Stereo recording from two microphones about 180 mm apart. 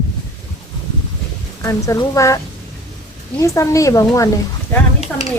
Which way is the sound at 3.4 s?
15° left (ahead or behind).